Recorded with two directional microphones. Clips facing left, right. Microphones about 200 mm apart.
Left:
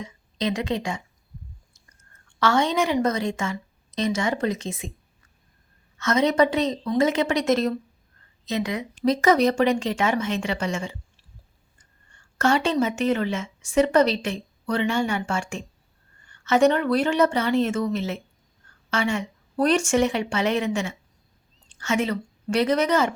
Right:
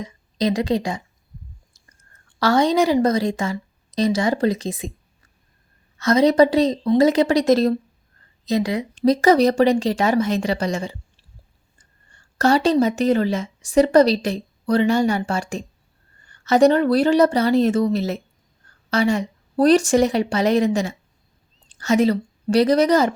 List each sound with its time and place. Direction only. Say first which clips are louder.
0.0 s a woman's voice: right 5 dB; 35° right (ahead or behind)
2.2 s a woman's voice: right 4 dB; 35° right (ahead or behind)
6.0 s a woman's voice: right 5 dB; 35° right (ahead or behind)